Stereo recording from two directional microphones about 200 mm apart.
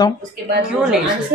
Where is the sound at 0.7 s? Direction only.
5° right (ahead or behind).